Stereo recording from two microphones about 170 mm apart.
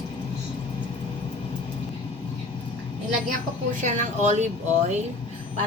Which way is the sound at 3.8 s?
45° right (ahead or behind).